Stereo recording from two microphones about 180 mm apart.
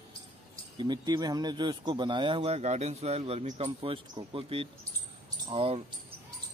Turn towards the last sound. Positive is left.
turn(degrees=-30)  # may be behind; listen again after turning